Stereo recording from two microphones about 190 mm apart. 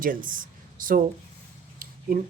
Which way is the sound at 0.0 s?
45° right (ahead or behind).